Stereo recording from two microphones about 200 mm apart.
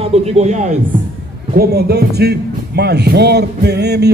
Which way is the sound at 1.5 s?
50° right (ahead or behind).